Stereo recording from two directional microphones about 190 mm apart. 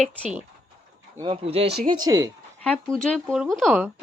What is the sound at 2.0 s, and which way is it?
Speech, 20° right (ahead or behind).